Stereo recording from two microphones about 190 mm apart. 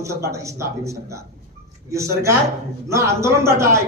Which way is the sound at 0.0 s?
15° right (ahead or behind).